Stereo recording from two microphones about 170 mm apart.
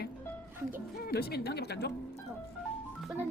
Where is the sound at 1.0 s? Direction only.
65° left (ahead or behind).